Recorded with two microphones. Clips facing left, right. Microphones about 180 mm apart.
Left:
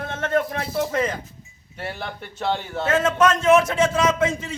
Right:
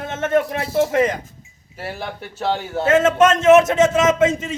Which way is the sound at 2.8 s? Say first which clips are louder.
Right 5 dB; 25° right (ahead or behind).